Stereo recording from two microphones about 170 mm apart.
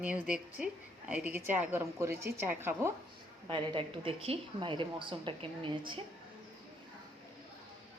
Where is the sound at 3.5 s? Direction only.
30° right (ahead or behind).